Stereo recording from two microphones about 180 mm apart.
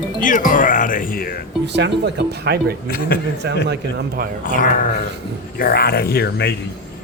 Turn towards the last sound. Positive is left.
turn(degrees=60)  # may be behind; listen again after turning